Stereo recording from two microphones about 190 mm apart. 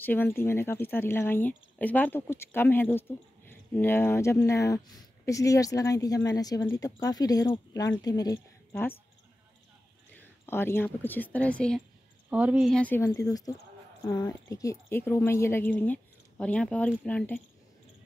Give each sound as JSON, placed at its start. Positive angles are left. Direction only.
{"t": 0.0, "sound": "a woman's voice", "side_deg": 10}
{"t": 10.1, "sound": "speech", "side_deg": 10}
{"t": 12.3, "sound": "speech", "side_deg": -5}